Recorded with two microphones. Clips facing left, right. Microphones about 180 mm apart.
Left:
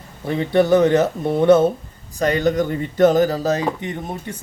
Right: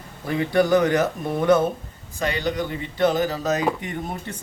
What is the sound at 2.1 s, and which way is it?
Speech, 45° left (ahead or behind).